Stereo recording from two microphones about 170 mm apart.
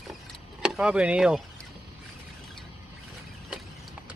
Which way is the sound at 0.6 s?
5° right (ahead or behind).